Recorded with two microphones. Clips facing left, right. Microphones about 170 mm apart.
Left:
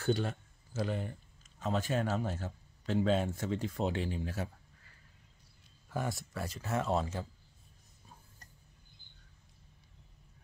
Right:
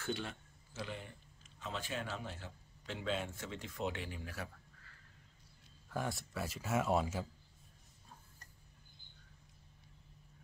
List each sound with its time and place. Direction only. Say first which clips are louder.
0.0 s speech: left 9 dB; 40° left (ahead or behind)
5.9 s a man's voice: left 3 dB; centre (ahead or behind)